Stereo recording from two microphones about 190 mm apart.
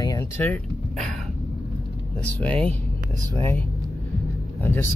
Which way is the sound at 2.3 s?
5° left (ahead or behind).